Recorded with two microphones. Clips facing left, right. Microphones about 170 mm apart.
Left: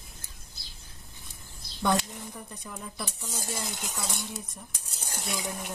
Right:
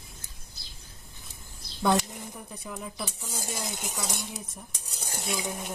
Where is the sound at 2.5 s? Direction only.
5° right (ahead or behind).